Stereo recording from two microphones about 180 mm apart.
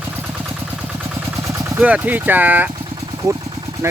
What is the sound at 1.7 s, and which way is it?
Speech, 10° right (ahead or behind).